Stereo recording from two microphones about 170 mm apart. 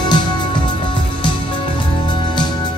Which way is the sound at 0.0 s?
25° left (ahead or behind).